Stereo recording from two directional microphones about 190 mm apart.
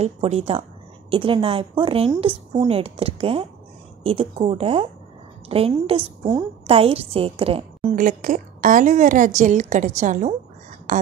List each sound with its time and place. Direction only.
0.0 s a woman's voice: 35° right (ahead or behind)